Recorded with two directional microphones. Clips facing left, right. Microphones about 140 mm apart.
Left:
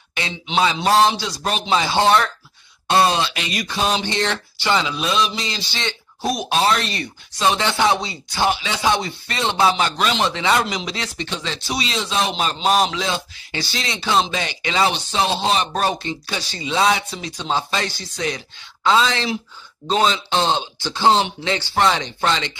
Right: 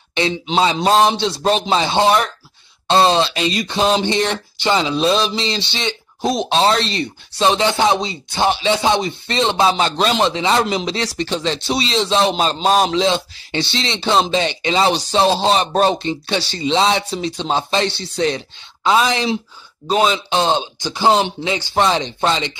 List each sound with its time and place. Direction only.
0.1 s speech: 25° right (ahead or behind)
15.0 s speech: 35° right (ahead or behind)
18.9 s a man's voice: 15° right (ahead or behind)